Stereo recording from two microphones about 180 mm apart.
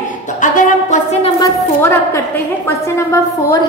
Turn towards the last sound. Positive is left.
turn(degrees=15)  # may be behind; listen again after turning